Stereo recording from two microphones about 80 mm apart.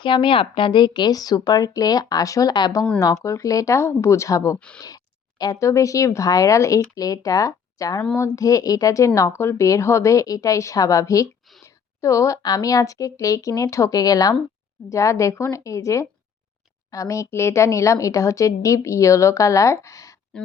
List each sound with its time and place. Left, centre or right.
0.0 s speech: left
3.2 s a woman's voice: left
5.5 s a woman's voice: left